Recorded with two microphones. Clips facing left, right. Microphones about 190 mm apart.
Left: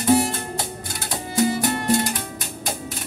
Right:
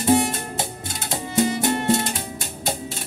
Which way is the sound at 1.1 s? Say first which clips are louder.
Even; 25° right (ahead or behind).